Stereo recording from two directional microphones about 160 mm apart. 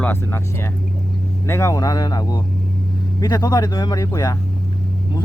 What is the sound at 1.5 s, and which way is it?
Speech, 20° left (ahead or behind).